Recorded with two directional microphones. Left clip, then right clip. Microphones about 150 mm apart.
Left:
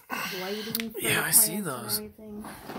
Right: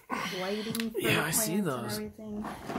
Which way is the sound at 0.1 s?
Centre (ahead or behind).